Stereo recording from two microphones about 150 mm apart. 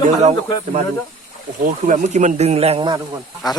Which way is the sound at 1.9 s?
50° right (ahead or behind).